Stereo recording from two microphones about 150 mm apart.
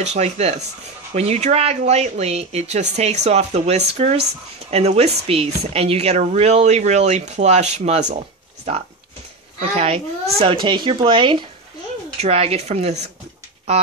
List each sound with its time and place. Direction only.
0.0 s speech: 45° right (ahead or behind)
9.6 s speech: 40° right (ahead or behind)